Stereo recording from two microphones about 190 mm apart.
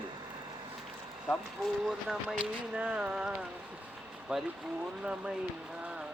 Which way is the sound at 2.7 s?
5° right (ahead or behind).